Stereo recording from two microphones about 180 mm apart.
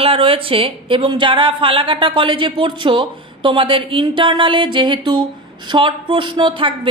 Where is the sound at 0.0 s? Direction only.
30° right (ahead or behind).